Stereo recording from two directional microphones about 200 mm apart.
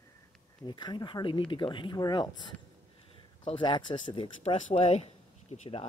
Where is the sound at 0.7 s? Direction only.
20° left (ahead or behind).